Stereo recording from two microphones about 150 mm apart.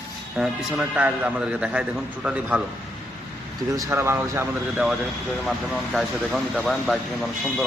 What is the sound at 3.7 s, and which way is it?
Speech, 20° right (ahead or behind).